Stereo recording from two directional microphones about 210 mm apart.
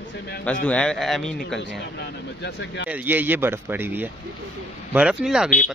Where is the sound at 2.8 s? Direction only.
10° right (ahead or behind).